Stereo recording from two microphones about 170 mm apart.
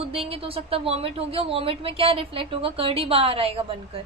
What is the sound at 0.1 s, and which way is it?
A woman's voice, 35° right (ahead or behind).